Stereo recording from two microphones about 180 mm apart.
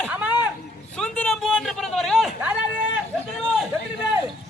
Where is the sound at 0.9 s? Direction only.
5° left (ahead or behind).